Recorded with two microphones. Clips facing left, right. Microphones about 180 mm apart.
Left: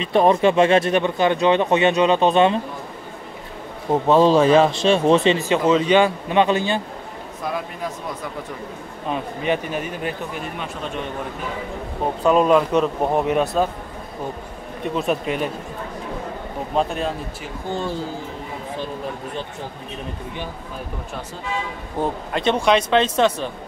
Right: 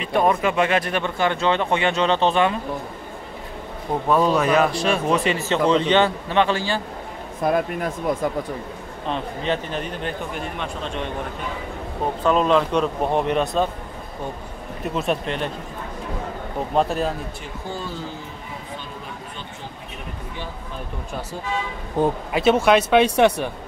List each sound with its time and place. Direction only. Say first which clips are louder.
0.0 s speech: left 4 dB; 25° left (ahead or behind)
4.1 s speech: left 4 dB; 30° left (ahead or behind)
5.5 s a man's voice: even; 10° left (ahead or behind)
7.4 s speech: right 6 dB; 55° right (ahead or behind)
9.1 s a man's voice: left 2 dB; 10° left (ahead or behind)
12.3 s a man's voice: left 3 dB; 5° left (ahead or behind)
15.0 s a man's voice: left 2 dB; 5° left (ahead or behind)
16.7 s speech: right 1 dB; centre (ahead or behind)
22.3 s speech: right 1 dB; 5° right (ahead or behind)